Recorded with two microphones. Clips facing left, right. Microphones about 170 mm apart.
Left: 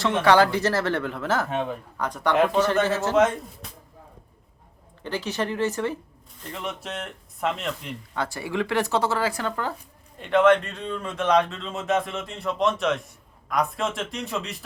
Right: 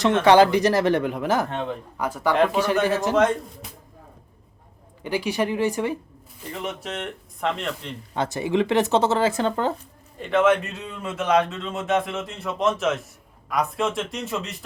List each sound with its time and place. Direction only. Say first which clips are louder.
0.2 s speech: right 3 dB; 20° right (ahead or behind)
1.5 s speech: left 1 dB; 10° left (ahead or behind)
2.0 s speech: right 1 dB; 5° right (ahead or behind)
5.0 s speech: right 4 dB; 10° right (ahead or behind)
6.5 s speech: right 2 dB; centre (ahead or behind)
8.1 s speech: right 5 dB; 20° right (ahead or behind)
10.2 s speech: left 1 dB; centre (ahead or behind)